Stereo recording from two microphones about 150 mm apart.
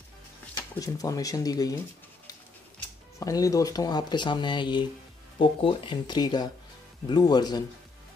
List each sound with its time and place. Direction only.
0.6 s speech: 25° left (ahead or behind)
3.2 s speech: 20° left (ahead or behind)